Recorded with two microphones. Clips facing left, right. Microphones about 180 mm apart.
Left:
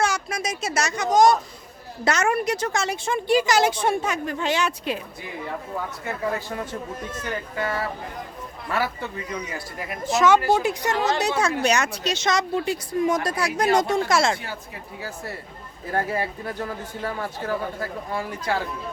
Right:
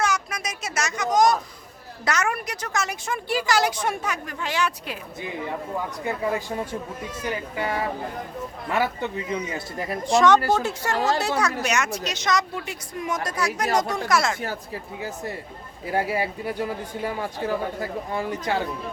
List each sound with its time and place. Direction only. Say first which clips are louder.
0.0 s speech: left 1 dB; 30° left (ahead or behind)
6.1 s speech: right 2 dB; 15° right (ahead or behind)
10.0 s a woman's voice: right 1 dB; 5° left (ahead or behind); by 14.3 s 25° left (ahead or behind)
15.0 s speech: even; 20° right (ahead or behind)